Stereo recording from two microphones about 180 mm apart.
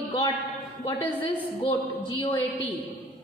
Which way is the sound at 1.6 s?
25° left (ahead or behind).